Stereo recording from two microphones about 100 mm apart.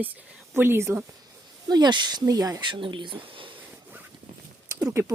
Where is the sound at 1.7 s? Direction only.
45° right (ahead or behind).